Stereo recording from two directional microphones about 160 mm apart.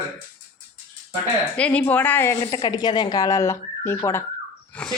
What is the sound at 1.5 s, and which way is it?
Speech, 10° left (ahead or behind).